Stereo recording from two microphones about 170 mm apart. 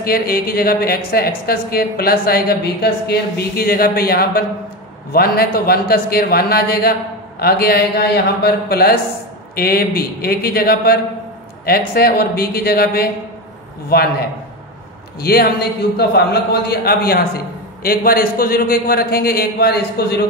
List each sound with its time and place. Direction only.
0.0 s a woman's voice: 60° left (ahead or behind)
15.1 s a woman's voice: 60° left (ahead or behind)